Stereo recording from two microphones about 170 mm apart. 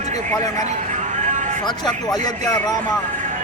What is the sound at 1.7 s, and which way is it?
Speech, 25° left (ahead or behind).